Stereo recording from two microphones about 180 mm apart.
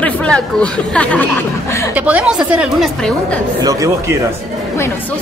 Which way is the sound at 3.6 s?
20° right (ahead or behind).